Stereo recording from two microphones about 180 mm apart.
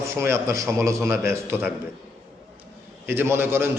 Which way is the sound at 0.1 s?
15° right (ahead or behind).